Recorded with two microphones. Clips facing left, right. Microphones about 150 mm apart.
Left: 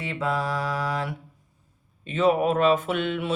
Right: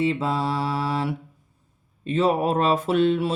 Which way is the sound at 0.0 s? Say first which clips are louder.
Right 4 dB; 30° right (ahead or behind).